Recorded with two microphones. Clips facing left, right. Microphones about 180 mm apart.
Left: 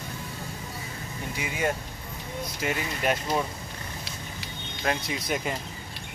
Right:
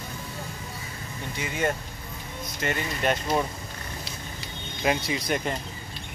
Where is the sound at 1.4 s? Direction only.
5° left (ahead or behind).